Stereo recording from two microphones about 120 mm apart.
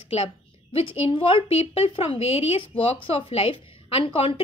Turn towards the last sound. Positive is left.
turn(degrees=50)  # may be behind; listen again after turning